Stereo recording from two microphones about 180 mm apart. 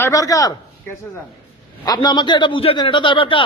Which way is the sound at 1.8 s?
20° left (ahead or behind).